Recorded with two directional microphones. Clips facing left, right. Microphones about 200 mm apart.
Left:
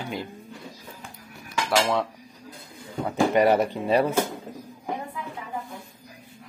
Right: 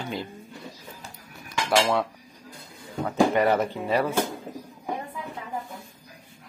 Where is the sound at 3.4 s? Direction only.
15° left (ahead or behind).